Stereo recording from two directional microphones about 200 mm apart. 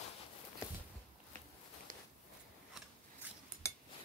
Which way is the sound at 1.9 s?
45° right (ahead or behind).